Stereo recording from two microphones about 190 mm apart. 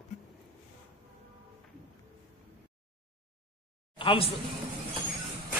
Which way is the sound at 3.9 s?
30° left (ahead or behind).